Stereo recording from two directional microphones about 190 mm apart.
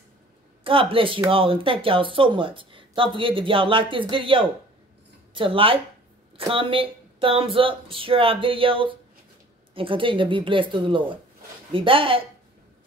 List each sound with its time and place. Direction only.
0.7 s a woman's voice: 30° right (ahead or behind)